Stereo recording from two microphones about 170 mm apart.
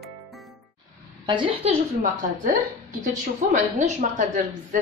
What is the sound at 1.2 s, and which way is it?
Speech, 30° right (ahead or behind).